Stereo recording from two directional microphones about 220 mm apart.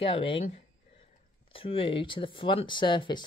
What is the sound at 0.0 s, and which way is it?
Speech, 25° left (ahead or behind).